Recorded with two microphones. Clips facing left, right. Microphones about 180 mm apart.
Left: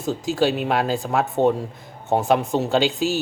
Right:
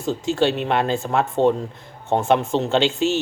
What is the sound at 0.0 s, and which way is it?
Speech, centre (ahead or behind).